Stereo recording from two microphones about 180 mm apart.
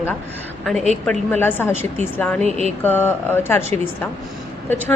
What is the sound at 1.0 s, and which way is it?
Speech, 10° left (ahead or behind).